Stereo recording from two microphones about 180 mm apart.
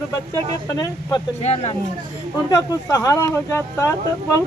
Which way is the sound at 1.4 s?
35° left (ahead or behind).